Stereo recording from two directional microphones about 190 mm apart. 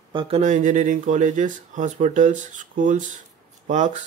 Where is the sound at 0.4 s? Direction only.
40° right (ahead or behind).